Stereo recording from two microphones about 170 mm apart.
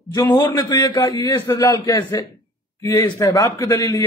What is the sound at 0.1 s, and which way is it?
A man's voice, 20° left (ahead or behind).